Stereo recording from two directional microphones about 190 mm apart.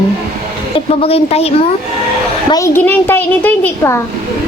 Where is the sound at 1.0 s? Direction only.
30° left (ahead or behind).